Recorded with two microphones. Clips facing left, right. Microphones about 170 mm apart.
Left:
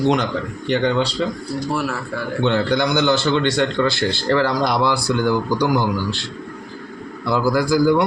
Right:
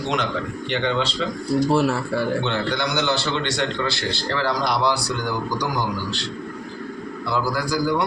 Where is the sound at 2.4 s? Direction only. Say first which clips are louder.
Left 6 dB; 50° left (ahead or behind).